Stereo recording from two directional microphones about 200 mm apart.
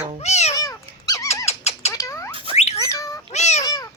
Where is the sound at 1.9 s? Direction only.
15° left (ahead or behind).